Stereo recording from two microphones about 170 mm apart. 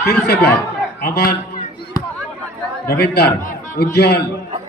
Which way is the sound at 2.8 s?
70° left (ahead or behind).